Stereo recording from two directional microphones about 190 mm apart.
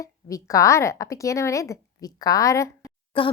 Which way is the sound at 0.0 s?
15° left (ahead or behind).